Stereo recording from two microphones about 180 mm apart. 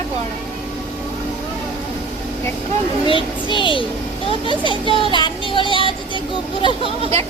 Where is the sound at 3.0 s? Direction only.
30° left (ahead or behind).